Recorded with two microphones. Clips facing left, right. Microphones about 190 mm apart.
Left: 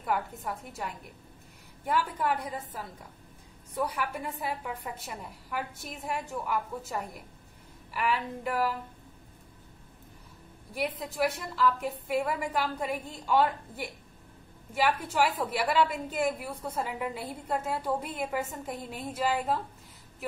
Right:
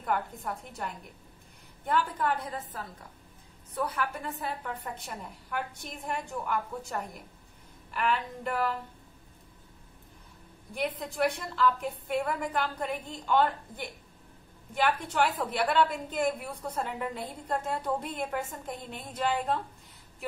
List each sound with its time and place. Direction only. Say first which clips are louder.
0.0 s a woman's voice: even; 5° left (ahead or behind)
10.7 s a woman's voice: even; 5° left (ahead or behind)